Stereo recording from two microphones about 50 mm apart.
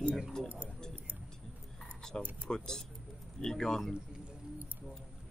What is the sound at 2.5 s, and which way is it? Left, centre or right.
Speech, centre.